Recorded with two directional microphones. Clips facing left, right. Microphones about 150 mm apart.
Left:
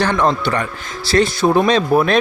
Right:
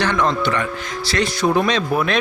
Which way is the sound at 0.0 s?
35° left (ahead or behind).